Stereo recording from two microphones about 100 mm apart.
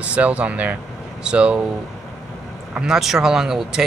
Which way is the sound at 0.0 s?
15° right (ahead or behind).